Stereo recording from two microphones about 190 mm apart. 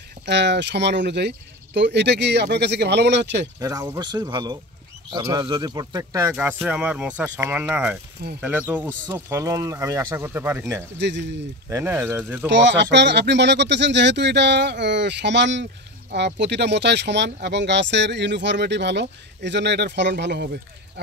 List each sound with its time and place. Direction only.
0.2 s speech: 65° right (ahead or behind)
3.5 s speech: 20° right (ahead or behind)
11.0 s speech: 65° right (ahead or behind)
11.7 s speech: 10° right (ahead or behind)
12.4 s speech: 70° right (ahead or behind)